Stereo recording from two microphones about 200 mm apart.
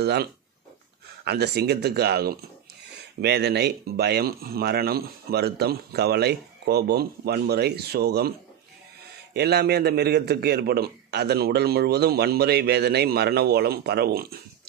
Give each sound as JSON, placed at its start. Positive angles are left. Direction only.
{"t": 0.0, "sound": "speech", "side_deg": -55}
{"t": 9.3, "sound": "a man's voice", "side_deg": -55}